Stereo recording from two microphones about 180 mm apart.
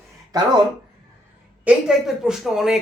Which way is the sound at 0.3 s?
20° right (ahead or behind).